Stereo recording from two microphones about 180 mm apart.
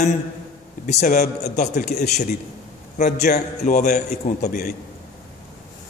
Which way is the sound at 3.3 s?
40° left (ahead or behind).